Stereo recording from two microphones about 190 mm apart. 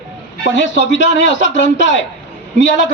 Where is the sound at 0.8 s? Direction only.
75° left (ahead or behind).